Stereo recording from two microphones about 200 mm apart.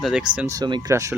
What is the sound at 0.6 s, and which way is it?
Speech, 20° right (ahead or behind).